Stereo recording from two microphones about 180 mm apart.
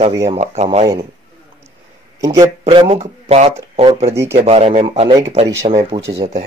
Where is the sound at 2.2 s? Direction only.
20° right (ahead or behind).